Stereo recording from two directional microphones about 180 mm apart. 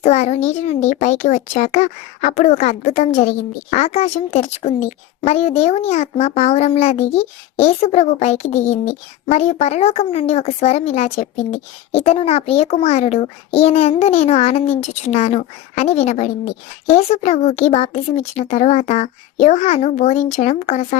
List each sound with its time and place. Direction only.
0.0 s a child's voice: 35° left (ahead or behind)